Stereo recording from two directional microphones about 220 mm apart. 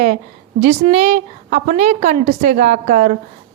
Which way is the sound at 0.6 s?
30° right (ahead or behind).